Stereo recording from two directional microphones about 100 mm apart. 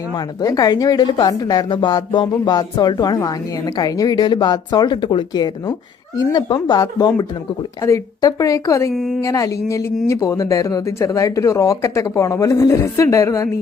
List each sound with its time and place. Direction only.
0.4 s speech: 35° left (ahead or behind)
8.9 s a woman's voice: centre (ahead or behind)
9.2 s speech: 35° left (ahead or behind)